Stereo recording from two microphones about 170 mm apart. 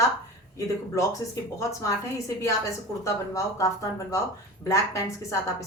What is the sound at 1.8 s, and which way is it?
Speech, 20° left (ahead or behind).